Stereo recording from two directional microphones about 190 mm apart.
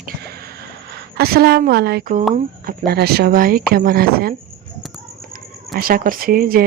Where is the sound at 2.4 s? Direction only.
50° right (ahead or behind).